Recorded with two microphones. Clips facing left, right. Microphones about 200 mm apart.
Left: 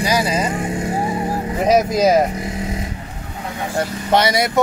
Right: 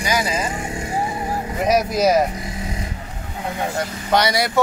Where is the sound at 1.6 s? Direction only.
25° left (ahead or behind).